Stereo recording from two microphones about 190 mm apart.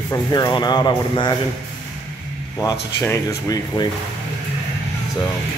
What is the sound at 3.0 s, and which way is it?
Speech, 15° left (ahead or behind).